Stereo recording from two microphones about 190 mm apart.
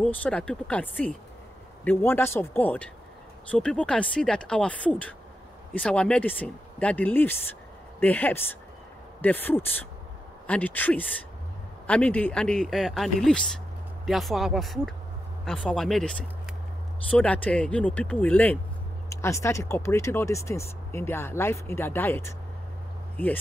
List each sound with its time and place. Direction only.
0.0 s speech: 5° left (ahead or behind)
17.1 s speech: 5° left (ahead or behind)